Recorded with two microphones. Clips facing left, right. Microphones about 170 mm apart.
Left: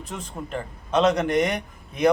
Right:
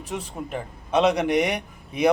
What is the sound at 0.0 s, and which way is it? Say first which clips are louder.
A man's voice: right 3 dB; 10° right (ahead or behind).